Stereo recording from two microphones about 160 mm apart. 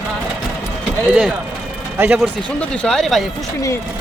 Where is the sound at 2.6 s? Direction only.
5° left (ahead or behind).